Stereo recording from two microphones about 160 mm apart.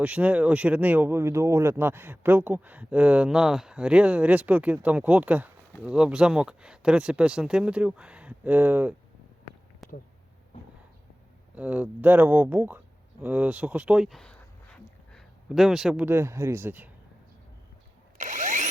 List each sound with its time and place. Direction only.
0.0 s speech: 10° right (ahead or behind)
9.8 s a sound: centre (ahead or behind)
11.5 s speech: 10° right (ahead or behind)
13.2 s a sound: 10° right (ahead or behind)
16.0 s speech: 15° right (ahead or behind)
18.2 s drill: 50° right (ahead or behind)